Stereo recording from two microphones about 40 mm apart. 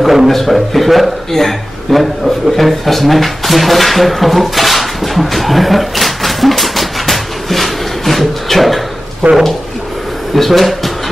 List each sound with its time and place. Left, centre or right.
0.0 s a man's voice: centre
9.2 s a man's voice: right
10.3 s a man's voice: centre